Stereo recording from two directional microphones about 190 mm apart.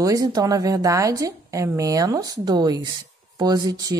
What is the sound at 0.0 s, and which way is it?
Speech, 20° right (ahead or behind).